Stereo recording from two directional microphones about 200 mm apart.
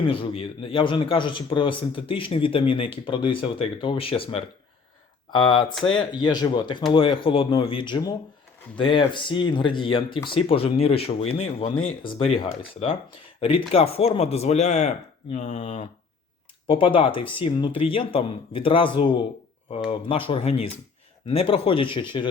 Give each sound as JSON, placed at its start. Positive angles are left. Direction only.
{"t": 0.0, "sound": "a man's voice", "side_deg": 25}
{"t": 13.4, "sound": "a man's voice", "side_deg": 30}